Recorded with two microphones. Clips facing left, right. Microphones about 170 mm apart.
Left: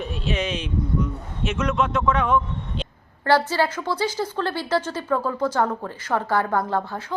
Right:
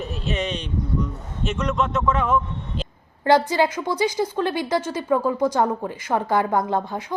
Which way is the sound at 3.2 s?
15° right (ahead or behind).